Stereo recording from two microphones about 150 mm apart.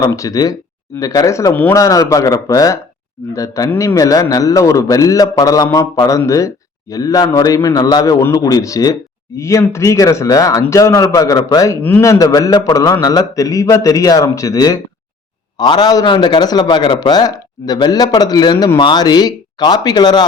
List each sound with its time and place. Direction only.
0.0 s speech: 20° left (ahead or behind)